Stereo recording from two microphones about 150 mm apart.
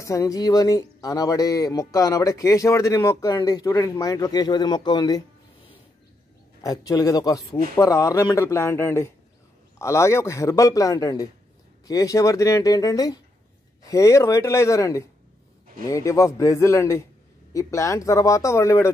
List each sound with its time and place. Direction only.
0.0 s speech: 20° left (ahead or behind)
6.6 s speech: 25° left (ahead or behind)